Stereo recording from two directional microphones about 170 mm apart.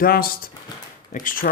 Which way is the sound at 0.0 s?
60° left (ahead or behind).